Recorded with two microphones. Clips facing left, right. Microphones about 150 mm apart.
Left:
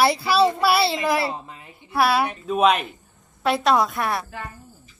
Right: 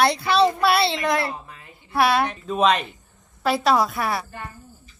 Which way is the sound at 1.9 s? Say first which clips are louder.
Even; 5° left (ahead or behind).